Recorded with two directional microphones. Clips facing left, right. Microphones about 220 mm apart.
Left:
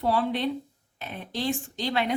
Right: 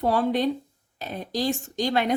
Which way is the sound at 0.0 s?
45° right (ahead or behind).